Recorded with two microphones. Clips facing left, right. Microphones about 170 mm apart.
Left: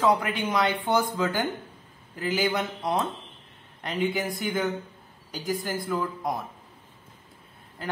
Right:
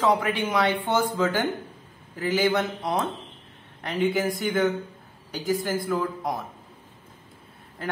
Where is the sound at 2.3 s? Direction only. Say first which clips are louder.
Right 4 dB; centre (ahead or behind).